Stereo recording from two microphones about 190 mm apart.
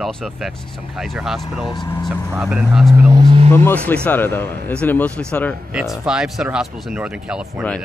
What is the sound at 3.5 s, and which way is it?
Speech, 10° left (ahead or behind).